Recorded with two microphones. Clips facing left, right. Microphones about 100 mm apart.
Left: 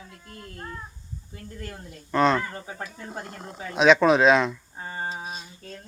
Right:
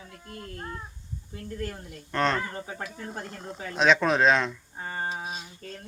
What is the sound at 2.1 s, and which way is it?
Speech, centre (ahead or behind).